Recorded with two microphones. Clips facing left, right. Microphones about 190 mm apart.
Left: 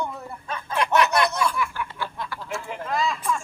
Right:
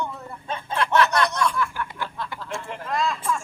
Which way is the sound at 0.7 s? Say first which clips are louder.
Even; 15° left (ahead or behind).